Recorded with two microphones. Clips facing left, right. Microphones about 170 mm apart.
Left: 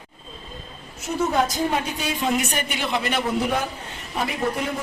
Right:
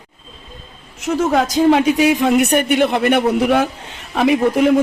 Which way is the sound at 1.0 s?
90° right.